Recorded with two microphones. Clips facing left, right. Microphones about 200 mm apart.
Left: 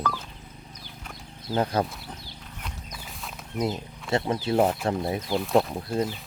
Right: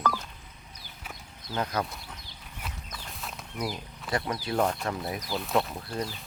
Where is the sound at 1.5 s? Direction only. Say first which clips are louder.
Left 6 dB; 30° left (ahead or behind).